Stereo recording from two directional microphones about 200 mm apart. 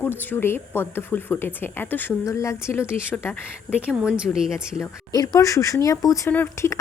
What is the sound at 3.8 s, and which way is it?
Speech, 5° right (ahead or behind).